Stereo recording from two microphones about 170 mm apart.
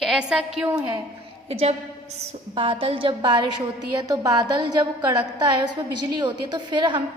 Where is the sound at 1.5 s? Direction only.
40° right (ahead or behind).